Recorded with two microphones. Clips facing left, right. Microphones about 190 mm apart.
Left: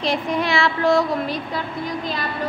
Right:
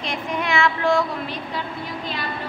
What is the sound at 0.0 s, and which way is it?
Child singing, 35° left (ahead or behind).